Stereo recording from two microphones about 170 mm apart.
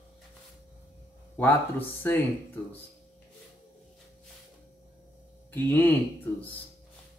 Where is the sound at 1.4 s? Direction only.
10° left (ahead or behind).